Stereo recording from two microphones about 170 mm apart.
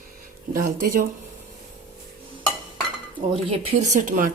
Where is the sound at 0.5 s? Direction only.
55° right (ahead or behind).